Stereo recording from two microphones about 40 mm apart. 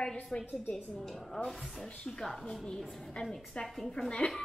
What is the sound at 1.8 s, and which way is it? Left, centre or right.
Speech, centre.